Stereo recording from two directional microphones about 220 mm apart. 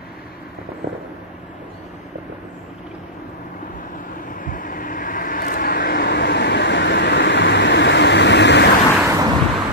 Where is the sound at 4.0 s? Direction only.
40° left (ahead or behind).